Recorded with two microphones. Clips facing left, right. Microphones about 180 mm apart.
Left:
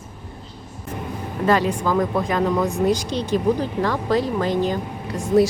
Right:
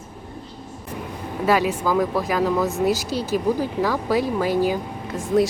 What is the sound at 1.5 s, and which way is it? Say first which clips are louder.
Speech: left 1 dB; 10° right (ahead or behind).